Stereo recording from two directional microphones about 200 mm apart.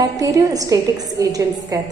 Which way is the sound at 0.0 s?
15° right (ahead or behind).